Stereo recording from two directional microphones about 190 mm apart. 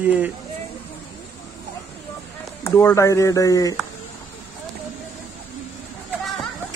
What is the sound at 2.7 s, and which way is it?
Speech, 15° left (ahead or behind).